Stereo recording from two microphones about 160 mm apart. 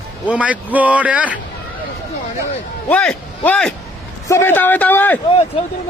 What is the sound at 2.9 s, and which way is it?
A man's voice, 10° left (ahead or behind).